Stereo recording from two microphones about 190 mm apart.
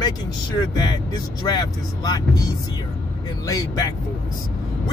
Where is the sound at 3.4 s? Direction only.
20° left (ahead or behind).